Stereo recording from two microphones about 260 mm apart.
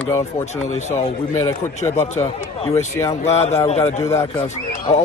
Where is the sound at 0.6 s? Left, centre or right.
Left.